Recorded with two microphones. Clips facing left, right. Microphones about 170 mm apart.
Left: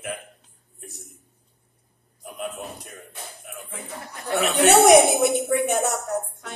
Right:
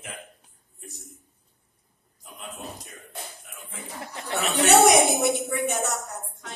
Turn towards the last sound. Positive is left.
turn(degrees=55)  # may be behind; listen again after turning